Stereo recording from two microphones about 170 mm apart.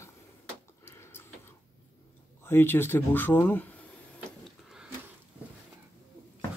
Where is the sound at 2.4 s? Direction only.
10° left (ahead or behind).